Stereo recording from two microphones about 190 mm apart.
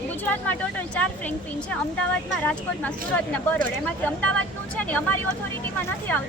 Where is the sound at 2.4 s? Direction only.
10° left (ahead or behind).